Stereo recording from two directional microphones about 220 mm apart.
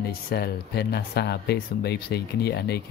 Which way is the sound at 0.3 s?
45° left (ahead or behind).